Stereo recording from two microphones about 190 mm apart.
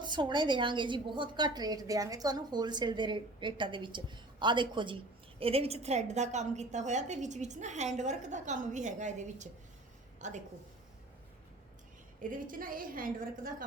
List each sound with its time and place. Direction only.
0.0 s a woman's voice: 25° right (ahead or behind)
12.2 s a woman's voice: 45° right (ahead or behind)